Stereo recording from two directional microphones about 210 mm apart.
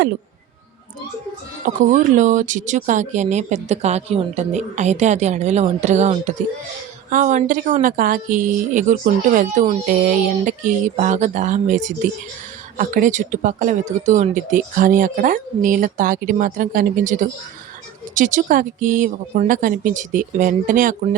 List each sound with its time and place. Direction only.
1.6 s speech: 40° right (ahead or behind)